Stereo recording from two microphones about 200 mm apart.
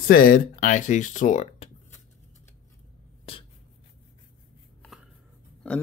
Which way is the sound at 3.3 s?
30° left (ahead or behind).